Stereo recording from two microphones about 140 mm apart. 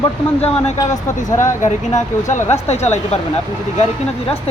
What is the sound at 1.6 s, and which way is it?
Speech, 60° left (ahead or behind).